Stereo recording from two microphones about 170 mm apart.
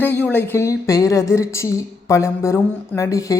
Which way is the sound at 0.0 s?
10° left (ahead or behind).